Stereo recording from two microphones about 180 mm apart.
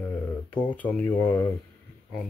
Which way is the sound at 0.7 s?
10° left (ahead or behind).